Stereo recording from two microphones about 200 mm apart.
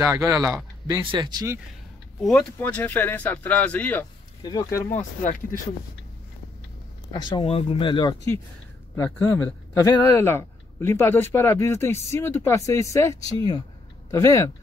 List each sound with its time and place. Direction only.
0.0 s speech: 15° right (ahead or behind)
2.1 s speech: 5° left (ahead or behind)
4.4 s speech: 20° left (ahead or behind)
4.9 s speech: 40° left (ahead or behind)
7.1 s speech: 25° left (ahead or behind)